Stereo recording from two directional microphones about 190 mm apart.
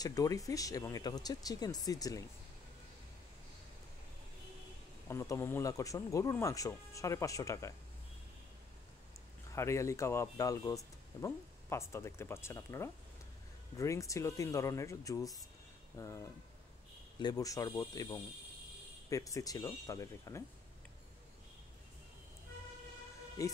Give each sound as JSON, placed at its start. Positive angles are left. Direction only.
{"t": 0.0, "sound": "speech", "side_deg": 20}
{"t": 5.0, "sound": "speech", "side_deg": 15}
{"t": 9.5, "sound": "speech", "side_deg": 15}
{"t": 23.4, "sound": "speech", "side_deg": 15}